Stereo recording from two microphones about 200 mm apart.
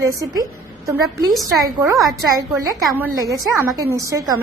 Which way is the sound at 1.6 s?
15° right (ahead or behind).